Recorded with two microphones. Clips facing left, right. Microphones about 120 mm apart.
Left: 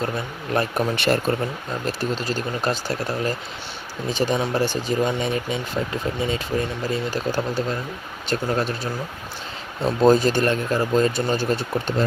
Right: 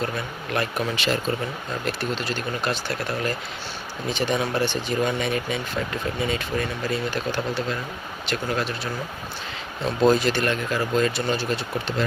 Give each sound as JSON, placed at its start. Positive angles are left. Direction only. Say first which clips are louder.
{"t": 0.5, "sound": "speech", "louder": "left 4 dB", "side_deg": 35}
{"t": 1.0, "sound": "speech", "louder": "left 5 dB", "side_deg": 55}
{"t": 1.8, "sound": "speech", "louder": "left 2 dB", "side_deg": 40}
{"t": 5.0, "sound": "speech", "louder": "left 1 dB", "side_deg": 30}
{"t": 10.1, "sound": "speech", "louder": "left 5 dB", "side_deg": 45}